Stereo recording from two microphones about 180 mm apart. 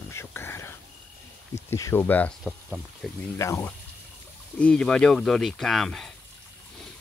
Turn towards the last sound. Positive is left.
turn(degrees=0)  # may be behind; listen again after turning